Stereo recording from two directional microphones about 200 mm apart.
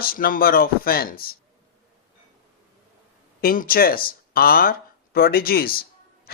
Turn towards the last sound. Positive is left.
turn(degrees=50)  # may be behind; listen again after turning